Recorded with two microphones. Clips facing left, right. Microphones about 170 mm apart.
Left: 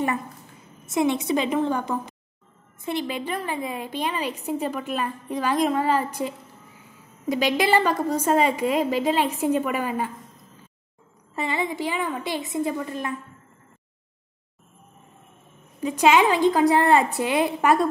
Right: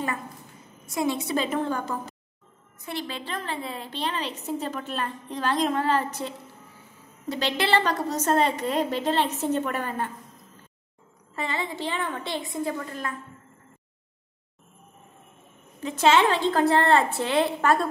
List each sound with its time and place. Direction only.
0.8 s a woman's voice: 20° left (ahead or behind)
11.3 s a woman's voice: 20° left (ahead or behind)
12.4 s a woman's voice: 20° left (ahead or behind)
15.8 s a woman's voice: 15° left (ahead or behind)